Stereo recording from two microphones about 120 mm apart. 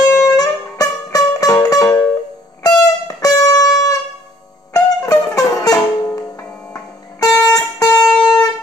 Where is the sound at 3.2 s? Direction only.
30° left (ahead or behind).